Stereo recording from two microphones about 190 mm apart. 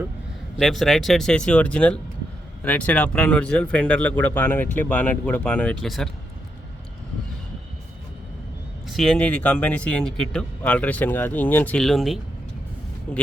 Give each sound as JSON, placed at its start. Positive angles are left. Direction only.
{"t": 0.5, "sound": "speech", "side_deg": 0}
{"t": 8.9, "sound": "speech", "side_deg": 0}